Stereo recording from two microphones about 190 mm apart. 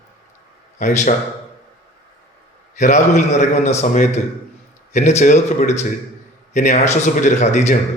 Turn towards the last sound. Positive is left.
turn(degrees=40)  # may be behind; listen again after turning